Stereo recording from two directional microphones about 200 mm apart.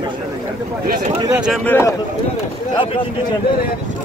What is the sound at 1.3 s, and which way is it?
Speech, 5° right (ahead or behind).